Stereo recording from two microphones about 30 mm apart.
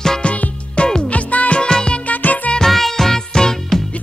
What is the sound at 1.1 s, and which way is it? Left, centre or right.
Music, left.